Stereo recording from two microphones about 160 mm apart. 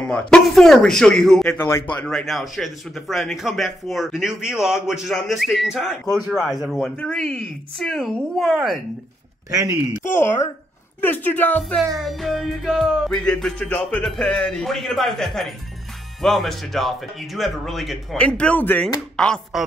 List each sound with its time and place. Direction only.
0.0 s music: 5° left (ahead or behind)
9.5 s speech: 20° right (ahead or behind)
10.0 s speech: 15° left (ahead or behind)
12.0 s music: centre (ahead or behind)